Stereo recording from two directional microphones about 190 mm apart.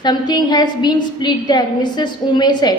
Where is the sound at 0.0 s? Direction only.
20° left (ahead or behind).